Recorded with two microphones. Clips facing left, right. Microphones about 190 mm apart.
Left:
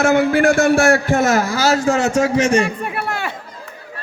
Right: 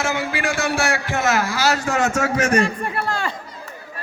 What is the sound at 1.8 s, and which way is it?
Speech, 30° left (ahead or behind).